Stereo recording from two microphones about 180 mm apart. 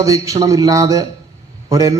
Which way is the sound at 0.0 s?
20° right (ahead or behind).